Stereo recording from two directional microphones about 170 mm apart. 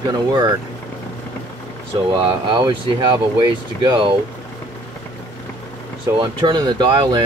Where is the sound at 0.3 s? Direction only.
25° right (ahead or behind).